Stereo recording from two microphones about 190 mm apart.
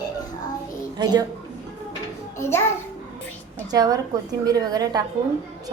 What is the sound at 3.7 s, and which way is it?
A woman's voice, 20° right (ahead or behind).